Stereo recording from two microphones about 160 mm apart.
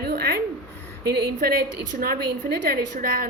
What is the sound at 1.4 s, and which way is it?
A woman's voice, 65° right (ahead or behind).